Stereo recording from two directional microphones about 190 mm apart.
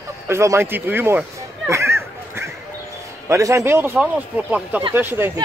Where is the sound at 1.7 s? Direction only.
15° right (ahead or behind).